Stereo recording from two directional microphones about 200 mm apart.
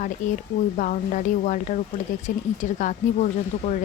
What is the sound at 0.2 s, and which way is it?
Speech, 40° left (ahead or behind).